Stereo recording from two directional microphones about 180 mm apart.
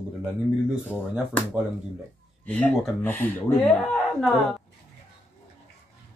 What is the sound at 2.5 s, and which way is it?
Speech, 5° left (ahead or behind).